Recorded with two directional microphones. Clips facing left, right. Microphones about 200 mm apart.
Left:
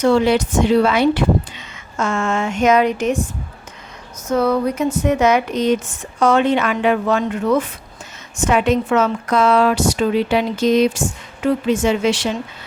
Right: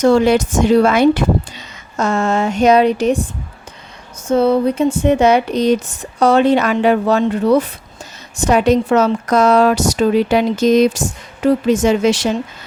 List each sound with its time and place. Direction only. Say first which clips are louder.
0.0 s speech: right 3 dB; 45° right (ahead or behind)
4.3 s speech: right 4 dB; 30° right (ahead or behind)